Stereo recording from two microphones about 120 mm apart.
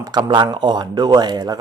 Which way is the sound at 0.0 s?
30° right (ahead or behind).